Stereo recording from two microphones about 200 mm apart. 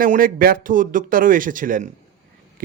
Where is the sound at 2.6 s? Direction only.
45° right (ahead or behind).